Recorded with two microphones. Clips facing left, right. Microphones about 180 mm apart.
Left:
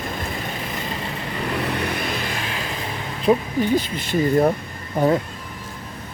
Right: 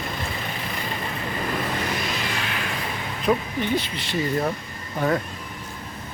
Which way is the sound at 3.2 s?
40° left (ahead or behind).